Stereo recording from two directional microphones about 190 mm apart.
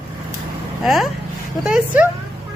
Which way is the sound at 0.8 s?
Centre (ahead or behind).